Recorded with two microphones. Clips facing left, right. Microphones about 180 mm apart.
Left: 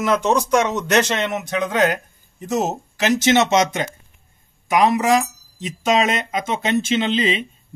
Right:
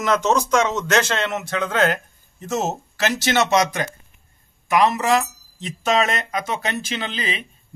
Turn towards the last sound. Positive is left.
turn(degrees=25)  # may be behind; listen again after turning